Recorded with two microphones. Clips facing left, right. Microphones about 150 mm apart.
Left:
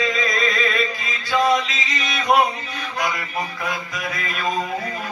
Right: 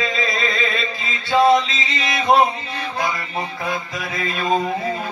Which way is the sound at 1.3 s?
30° right (ahead or behind).